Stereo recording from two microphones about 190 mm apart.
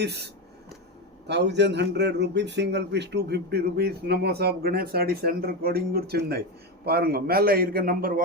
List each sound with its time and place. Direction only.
0.0 s a man's voice: 60° right (ahead or behind)
1.3 s a man's voice: 65° right (ahead or behind); by 8.2 s 50° right (ahead or behind)